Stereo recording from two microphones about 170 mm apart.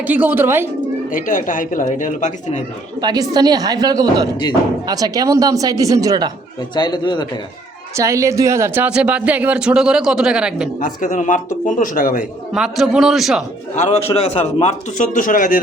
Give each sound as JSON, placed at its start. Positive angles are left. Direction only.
{"t": 0.0, "sound": "speech", "side_deg": -10}
{"t": 1.1, "sound": "a man's voice", "side_deg": 50}
{"t": 3.0, "sound": "speech", "side_deg": -25}
{"t": 6.7, "sound": "a man's voice", "side_deg": 25}
{"t": 7.9, "sound": "speech", "side_deg": -20}
{"t": 10.8, "sound": "a man's voice", "side_deg": 50}
{"t": 12.5, "sound": "a man's voice", "side_deg": 0}
{"t": 13.7, "sound": "a man's voice", "side_deg": 40}